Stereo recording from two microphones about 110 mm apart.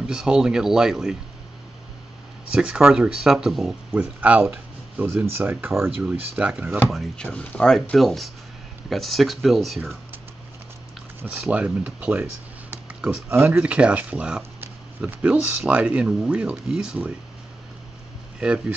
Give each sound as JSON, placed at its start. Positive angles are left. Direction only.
{"t": 0.0, "sound": "speech", "side_deg": -5}
{"t": 2.5, "sound": "speech", "side_deg": -5}
{"t": 6.9, "sound": "speech", "side_deg": 0}
{"t": 11.4, "sound": "speech", "side_deg": -10}
{"t": 13.3, "sound": "speech", "side_deg": -15}